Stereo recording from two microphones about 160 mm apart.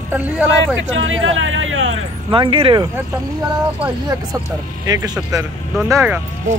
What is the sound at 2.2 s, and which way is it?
Speech, 30° right (ahead or behind).